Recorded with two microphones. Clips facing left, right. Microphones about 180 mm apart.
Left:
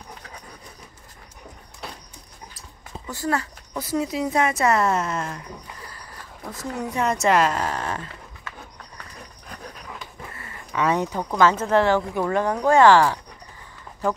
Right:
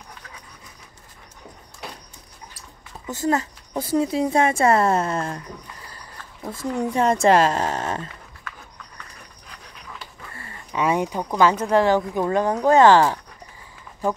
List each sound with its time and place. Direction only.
3.1 s a woman's voice: 20° right (ahead or behind)
6.5 s a woman's voice: 25° right (ahead or behind)
9.9 s a sound: 30° right (ahead or behind)
10.7 s speech: 15° right (ahead or behind)